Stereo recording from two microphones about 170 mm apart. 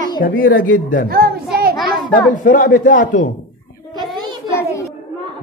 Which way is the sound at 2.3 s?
50° left (ahead or behind).